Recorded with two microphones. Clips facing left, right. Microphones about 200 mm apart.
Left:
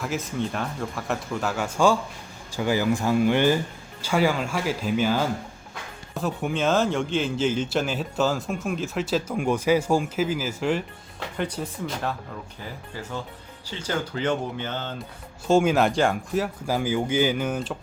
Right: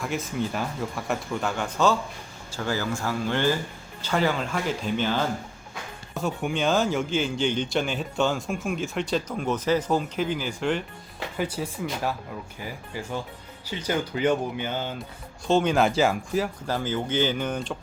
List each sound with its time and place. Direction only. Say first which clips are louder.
0.0 s a man's voice: even; centre (ahead or behind)
15.4 s a man's voice: left 2 dB; 5° left (ahead or behind)